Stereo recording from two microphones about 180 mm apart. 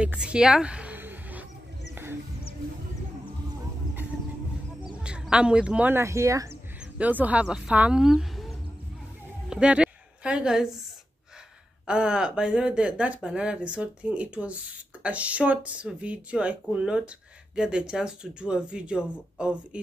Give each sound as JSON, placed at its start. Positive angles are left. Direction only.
{"t": 0.0, "sound": "a sound", "side_deg": -5}
{"t": 4.9, "sound": "a woman's voice", "side_deg": -5}
{"t": 11.8, "sound": "speech", "side_deg": -5}